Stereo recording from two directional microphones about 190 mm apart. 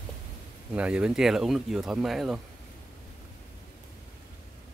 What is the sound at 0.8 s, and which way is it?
Speech, 5° right (ahead or behind).